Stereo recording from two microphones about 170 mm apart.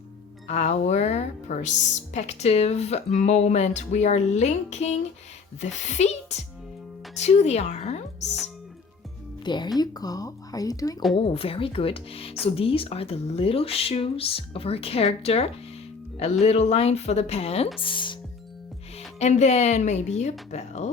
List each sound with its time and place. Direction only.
0.4 s speech: 40° left (ahead or behind)
9.4 s speech: 25° left (ahead or behind)
11.2 s speech: 35° left (ahead or behind)
19.2 s speech: 40° left (ahead or behind)